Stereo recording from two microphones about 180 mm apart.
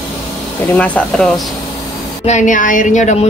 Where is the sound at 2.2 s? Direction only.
45° left (ahead or behind).